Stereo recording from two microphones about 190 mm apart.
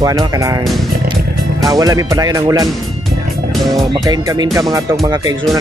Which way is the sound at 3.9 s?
20° right (ahead or behind).